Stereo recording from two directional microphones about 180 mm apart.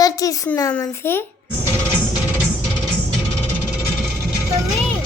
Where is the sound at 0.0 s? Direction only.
20° left (ahead or behind).